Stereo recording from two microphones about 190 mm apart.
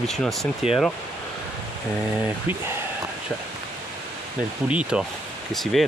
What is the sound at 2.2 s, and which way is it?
Speech, 10° right (ahead or behind).